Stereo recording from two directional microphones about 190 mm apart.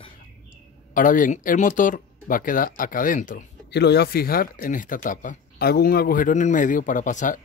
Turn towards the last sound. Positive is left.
turn(degrees=40)  # may be behind; listen again after turning